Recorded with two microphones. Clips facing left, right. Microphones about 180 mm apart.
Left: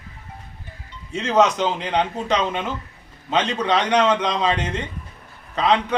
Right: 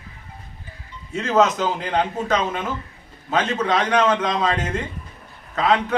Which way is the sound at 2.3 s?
20° left (ahead or behind).